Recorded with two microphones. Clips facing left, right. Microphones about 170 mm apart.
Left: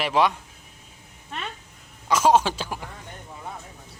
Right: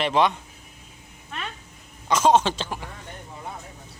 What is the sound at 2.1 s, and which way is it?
Speech, 10° left (ahead or behind).